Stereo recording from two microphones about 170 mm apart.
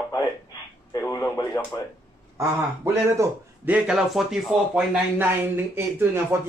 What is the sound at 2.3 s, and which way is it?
Speech, 15° right (ahead or behind).